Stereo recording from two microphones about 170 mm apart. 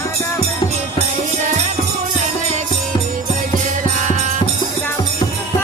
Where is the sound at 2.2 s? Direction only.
45° right (ahead or behind).